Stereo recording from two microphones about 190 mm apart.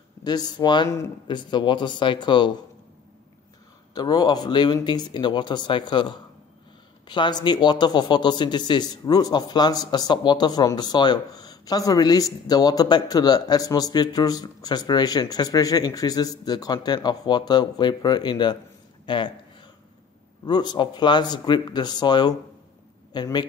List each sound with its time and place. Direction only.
0.2 s a man's voice: 20° left (ahead or behind)
3.9 s a man's voice: 20° left (ahead or behind)
20.4 s a man's voice: 25° left (ahead or behind)